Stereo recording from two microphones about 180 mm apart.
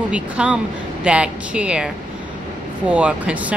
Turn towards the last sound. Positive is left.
turn(degrees=-10)  # may be behind; listen again after turning